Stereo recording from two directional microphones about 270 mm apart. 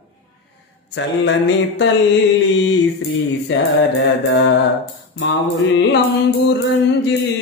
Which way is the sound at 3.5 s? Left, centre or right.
Left.